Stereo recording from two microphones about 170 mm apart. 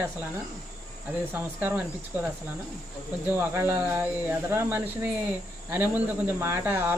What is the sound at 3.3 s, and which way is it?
Speech, 10° right (ahead or behind).